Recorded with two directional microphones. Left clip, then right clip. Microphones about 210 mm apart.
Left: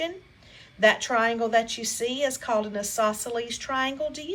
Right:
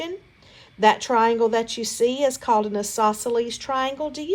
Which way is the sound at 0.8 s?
15° right (ahead or behind).